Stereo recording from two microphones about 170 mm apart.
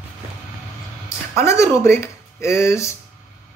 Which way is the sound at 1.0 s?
15° left (ahead or behind).